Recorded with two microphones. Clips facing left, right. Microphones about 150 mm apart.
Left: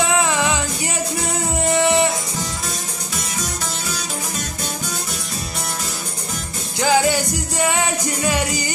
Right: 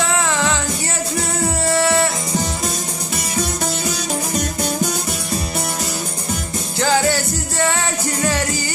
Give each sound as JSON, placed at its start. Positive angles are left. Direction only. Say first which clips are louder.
{"t": 0.0, "sound": "music", "louder": "left 1 dB", "side_deg": 15}
{"t": 1.6, "sound": "music", "louder": "left 1 dB", "side_deg": 20}
{"t": 6.8, "sound": "music", "louder": "left 1 dB", "side_deg": 15}